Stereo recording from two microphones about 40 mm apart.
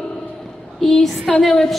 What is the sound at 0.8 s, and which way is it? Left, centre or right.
Speech, centre.